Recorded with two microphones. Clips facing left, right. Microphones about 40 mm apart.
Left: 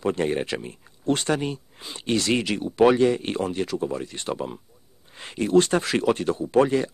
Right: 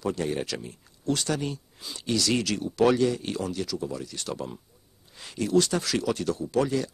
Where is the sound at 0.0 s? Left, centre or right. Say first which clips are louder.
Left 4 dB; left.